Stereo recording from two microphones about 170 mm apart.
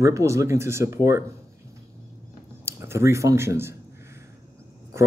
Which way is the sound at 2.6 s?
15° right (ahead or behind).